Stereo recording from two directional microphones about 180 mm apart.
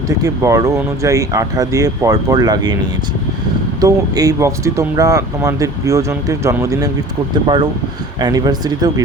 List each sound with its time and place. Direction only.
0.2 s speech: 20° right (ahead or behind)
3.8 s speech: 20° right (ahead or behind)